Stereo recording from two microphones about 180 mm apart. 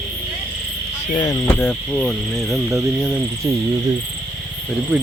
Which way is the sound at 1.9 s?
Centre (ahead or behind).